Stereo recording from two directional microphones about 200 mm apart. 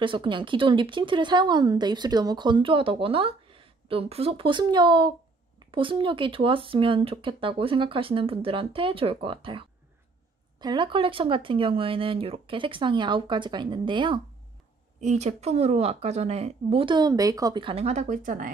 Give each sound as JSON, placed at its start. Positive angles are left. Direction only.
{"t": 0.0, "sound": "speech", "side_deg": -25}
{"t": 15.0, "sound": "speech", "side_deg": -35}